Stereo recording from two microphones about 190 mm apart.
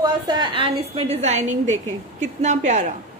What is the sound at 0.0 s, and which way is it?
A woman's voice, 20° right (ahead or behind).